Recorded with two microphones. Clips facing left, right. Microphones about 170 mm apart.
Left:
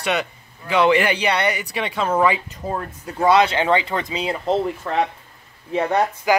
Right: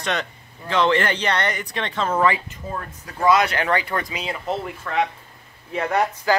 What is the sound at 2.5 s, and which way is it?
Speech, 35° left (ahead or behind).